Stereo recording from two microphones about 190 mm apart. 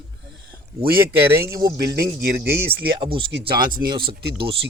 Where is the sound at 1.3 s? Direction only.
15° right (ahead or behind).